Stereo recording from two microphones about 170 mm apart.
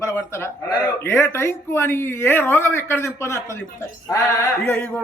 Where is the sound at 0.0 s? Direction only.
15° left (ahead or behind).